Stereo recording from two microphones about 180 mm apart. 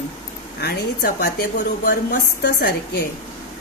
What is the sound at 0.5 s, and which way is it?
Speech, 60° left (ahead or behind).